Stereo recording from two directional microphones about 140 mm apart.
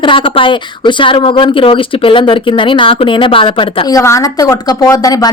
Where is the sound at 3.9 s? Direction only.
20° left (ahead or behind).